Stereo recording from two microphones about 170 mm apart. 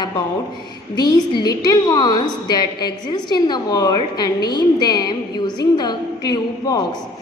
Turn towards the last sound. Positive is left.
turn(degrees=20)  # may be behind; listen again after turning